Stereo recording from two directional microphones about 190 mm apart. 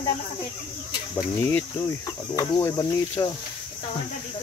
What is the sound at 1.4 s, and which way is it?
Speech, 10° left (ahead or behind).